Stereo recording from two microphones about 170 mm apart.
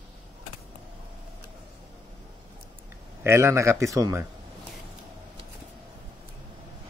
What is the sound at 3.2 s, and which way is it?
A man's voice, 15° right (ahead or behind).